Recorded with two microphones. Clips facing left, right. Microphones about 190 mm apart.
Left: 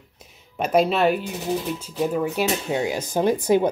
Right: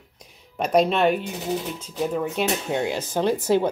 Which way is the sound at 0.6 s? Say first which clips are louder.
Even; 5° left (ahead or behind).